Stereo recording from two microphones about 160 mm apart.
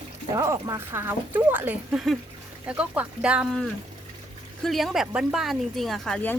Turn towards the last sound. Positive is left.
turn(degrees=10)  # may be behind; listen again after turning